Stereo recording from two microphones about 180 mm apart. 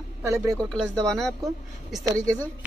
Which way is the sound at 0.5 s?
5° left (ahead or behind).